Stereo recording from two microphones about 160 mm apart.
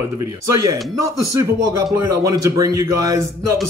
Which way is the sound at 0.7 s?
20° right (ahead or behind).